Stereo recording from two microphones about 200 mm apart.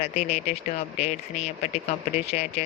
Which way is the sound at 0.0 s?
30° left (ahead or behind).